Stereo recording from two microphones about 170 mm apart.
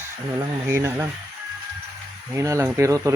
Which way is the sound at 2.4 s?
15° right (ahead or behind).